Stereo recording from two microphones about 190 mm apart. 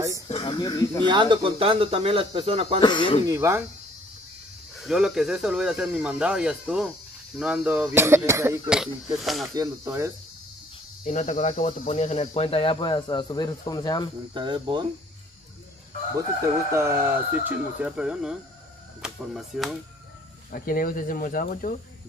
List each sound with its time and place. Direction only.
0.4 s speech: 20° left (ahead or behind)
1.0 s speech: 25° right (ahead or behind)
2.8 s speech: 25° left (ahead or behind)
3.3 s speech: 15° right (ahead or behind)
4.8 s speech: centre (ahead or behind)
9.6 s speech: 15° right (ahead or behind)
11.1 s speech: 40° left (ahead or behind); by 14.1 s 20° left (ahead or behind)
14.3 s speech: 25° right (ahead or behind)
16.7 s speech: 15° right (ahead or behind)
20.5 s speech: 50° left (ahead or behind)